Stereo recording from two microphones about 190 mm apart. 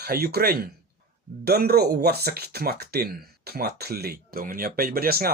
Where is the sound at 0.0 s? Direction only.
55° right (ahead or behind).